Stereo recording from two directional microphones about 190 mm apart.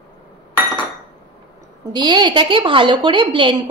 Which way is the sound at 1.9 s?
25° right (ahead or behind).